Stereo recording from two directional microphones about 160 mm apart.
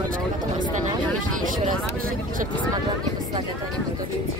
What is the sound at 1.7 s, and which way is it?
Vehicle, 60° right (ahead or behind).